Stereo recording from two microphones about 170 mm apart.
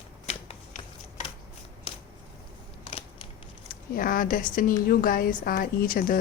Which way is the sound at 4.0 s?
55° left (ahead or behind).